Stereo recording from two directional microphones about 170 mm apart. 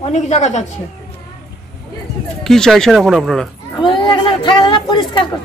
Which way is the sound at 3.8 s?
30° left (ahead or behind).